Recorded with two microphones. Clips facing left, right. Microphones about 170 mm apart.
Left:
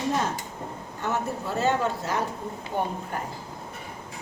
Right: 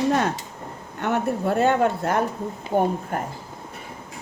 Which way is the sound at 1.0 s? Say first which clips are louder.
Right 6 dB; 60° right (ahead or behind).